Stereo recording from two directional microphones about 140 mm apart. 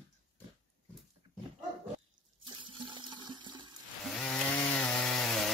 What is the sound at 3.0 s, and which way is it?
Toilet flush, 35° right (ahead or behind).